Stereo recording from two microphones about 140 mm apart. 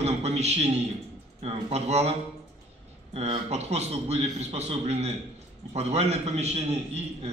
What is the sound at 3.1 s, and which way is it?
A man's voice, 50° right (ahead or behind).